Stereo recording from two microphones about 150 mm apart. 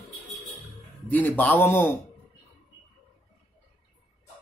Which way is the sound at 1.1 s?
10° left (ahead or behind).